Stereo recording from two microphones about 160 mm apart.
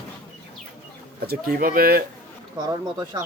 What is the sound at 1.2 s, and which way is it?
Speech, 70° right (ahead or behind).